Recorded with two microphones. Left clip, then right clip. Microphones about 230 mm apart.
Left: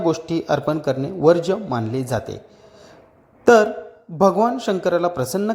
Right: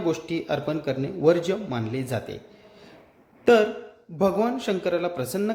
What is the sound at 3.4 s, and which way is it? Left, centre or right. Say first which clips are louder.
Speech: left 5 dB; centre.